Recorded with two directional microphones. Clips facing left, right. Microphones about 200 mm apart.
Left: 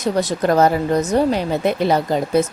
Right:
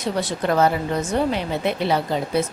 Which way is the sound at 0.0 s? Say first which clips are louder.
Left 5 dB; 40° left (ahead or behind).